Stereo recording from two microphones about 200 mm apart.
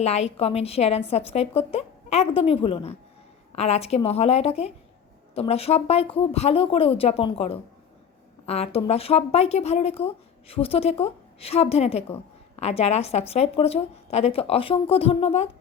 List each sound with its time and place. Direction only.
0.0 s a woman's voice: 30° left (ahead or behind)